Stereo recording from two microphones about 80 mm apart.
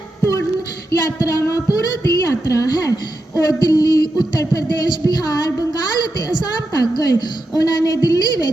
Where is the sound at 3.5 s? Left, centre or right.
Left.